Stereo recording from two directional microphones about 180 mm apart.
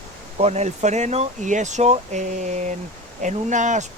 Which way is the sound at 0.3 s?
35° right (ahead or behind).